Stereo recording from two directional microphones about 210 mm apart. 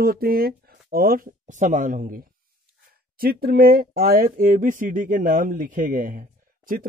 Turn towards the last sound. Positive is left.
turn(degrees=-40)  # may be behind; listen again after turning